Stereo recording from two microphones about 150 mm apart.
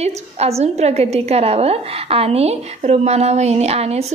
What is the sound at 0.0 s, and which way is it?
A woman's voice, 45° right (ahead or behind).